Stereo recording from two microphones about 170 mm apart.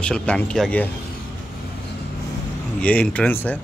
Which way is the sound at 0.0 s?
5° left (ahead or behind).